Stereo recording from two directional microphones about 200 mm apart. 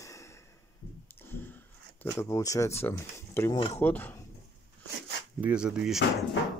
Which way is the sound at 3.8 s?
10° left (ahead or behind).